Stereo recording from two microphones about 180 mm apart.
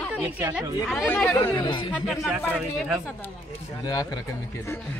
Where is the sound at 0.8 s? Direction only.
5° left (ahead or behind).